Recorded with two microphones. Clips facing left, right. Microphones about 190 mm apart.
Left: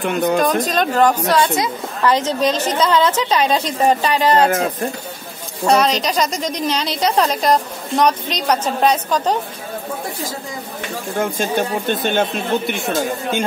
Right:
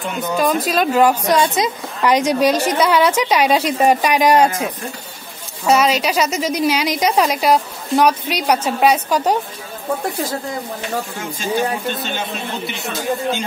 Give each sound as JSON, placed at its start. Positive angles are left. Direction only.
{"t": 0.0, "sound": "a woman's voice", "side_deg": 60}
{"t": 0.4, "sound": "a woman's voice", "side_deg": -5}
{"t": 5.7, "sound": "a woman's voice", "side_deg": -5}
{"t": 11.9, "sound": "speech", "side_deg": 55}